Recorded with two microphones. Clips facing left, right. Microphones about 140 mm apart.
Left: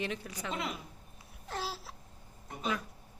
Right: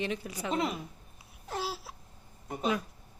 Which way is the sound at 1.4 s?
10° right (ahead or behind).